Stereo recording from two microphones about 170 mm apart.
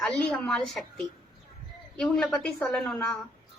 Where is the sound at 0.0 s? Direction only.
Centre (ahead or behind).